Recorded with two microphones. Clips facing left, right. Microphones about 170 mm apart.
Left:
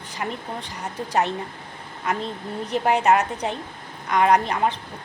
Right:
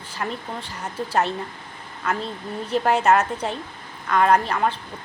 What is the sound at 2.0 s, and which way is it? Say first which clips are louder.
A woman's voice: even; 20° left (ahead or behind).